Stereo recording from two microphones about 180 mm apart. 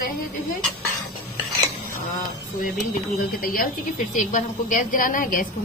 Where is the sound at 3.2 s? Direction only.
55° left (ahead or behind).